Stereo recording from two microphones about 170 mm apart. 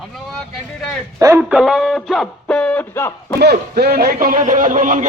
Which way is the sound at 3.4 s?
70° right (ahead or behind).